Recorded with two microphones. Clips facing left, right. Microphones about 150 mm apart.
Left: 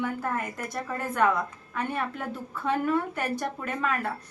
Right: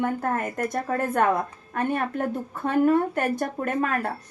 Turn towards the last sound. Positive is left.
turn(degrees=-45)  # may be behind; listen again after turning